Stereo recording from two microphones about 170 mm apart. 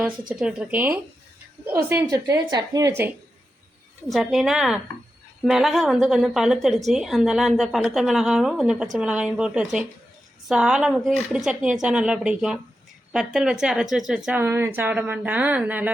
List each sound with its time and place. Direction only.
0.3 s a woman's voice: 5° right (ahead or behind); by 2.9 s 20° right (ahead or behind)
4.1 s a woman's voice: centre (ahead or behind)